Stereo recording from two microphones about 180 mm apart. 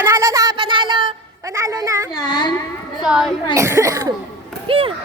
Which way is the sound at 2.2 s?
25° left (ahead or behind).